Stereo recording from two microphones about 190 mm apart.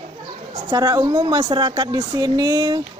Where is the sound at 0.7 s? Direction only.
20° right (ahead or behind).